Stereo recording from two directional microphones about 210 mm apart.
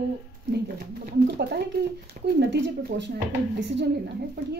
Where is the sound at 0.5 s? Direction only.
50° right (ahead or behind).